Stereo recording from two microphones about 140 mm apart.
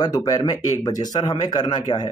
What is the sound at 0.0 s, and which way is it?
A man's voice, 30° left (ahead or behind).